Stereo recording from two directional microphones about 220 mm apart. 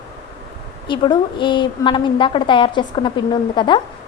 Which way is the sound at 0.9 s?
20° left (ahead or behind).